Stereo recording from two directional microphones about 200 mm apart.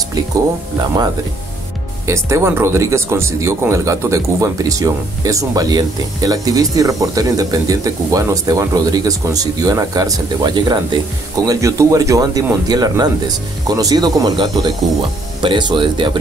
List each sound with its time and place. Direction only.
2.0 s speech: 15° right (ahead or behind)